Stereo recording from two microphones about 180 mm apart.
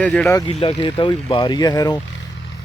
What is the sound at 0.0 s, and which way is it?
Speech, 5° left (ahead or behind).